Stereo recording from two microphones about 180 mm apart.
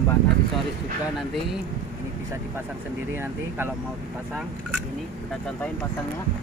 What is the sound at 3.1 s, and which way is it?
Speech, 10° right (ahead or behind).